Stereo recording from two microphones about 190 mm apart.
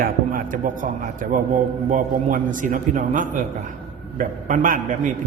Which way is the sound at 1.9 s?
45° right (ahead or behind).